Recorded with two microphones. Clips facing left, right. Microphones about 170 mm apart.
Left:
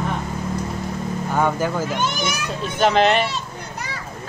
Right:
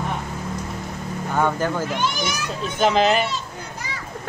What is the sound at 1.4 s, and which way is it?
Speech, 10° left (ahead or behind).